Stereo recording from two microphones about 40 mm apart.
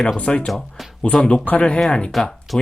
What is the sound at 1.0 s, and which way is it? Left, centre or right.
Speech, left.